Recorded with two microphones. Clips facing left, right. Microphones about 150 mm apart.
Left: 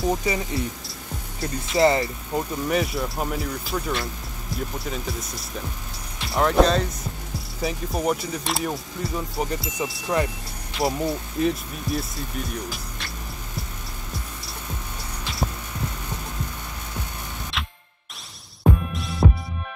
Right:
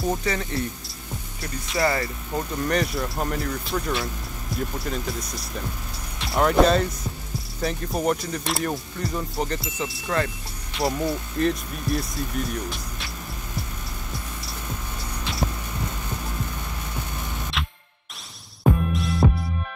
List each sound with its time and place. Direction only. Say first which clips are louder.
0.2 s speech: left 1 dB; 15° left (ahead or behind)
1.8 s speech: left 5 dB; 25° left (ahead or behind)
2.3 s speech: left 1 dB; 5° left (ahead or behind)
17.5 s music: right 1 dB; centre (ahead or behind)